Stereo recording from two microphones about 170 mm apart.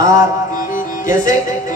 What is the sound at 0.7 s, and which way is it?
Music, 50° left (ahead or behind).